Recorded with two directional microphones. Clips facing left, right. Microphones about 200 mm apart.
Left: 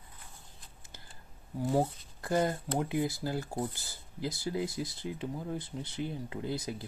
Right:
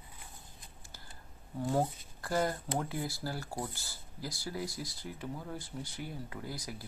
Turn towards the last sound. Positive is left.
turn(degrees=25)  # may be behind; listen again after turning